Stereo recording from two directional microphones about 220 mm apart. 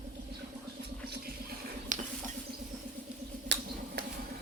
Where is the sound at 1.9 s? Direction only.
35° right (ahead or behind).